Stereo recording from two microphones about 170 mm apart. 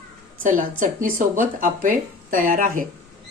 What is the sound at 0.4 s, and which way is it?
Speech, 50° right (ahead or behind).